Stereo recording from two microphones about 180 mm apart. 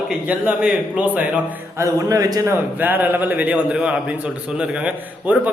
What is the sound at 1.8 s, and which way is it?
Speech, 20° right (ahead or behind).